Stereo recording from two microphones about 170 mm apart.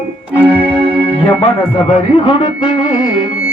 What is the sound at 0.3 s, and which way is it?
Organ, 10° right (ahead or behind).